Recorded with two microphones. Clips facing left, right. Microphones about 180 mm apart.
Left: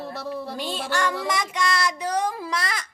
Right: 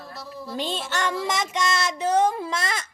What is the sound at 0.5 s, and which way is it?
Child singing, 20° right (ahead or behind).